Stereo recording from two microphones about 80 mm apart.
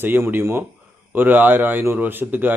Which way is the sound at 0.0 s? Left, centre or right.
Right.